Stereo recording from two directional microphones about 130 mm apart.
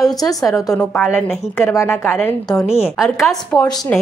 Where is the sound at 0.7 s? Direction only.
10° left (ahead or behind).